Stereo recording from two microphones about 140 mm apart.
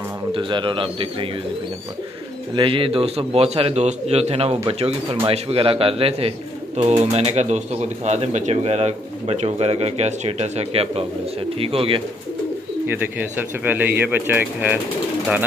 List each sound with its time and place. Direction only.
0.3 s speech: 35° right (ahead or behind)
2.5 s speech: 40° right (ahead or behind)
12.8 s speech: 15° right (ahead or behind)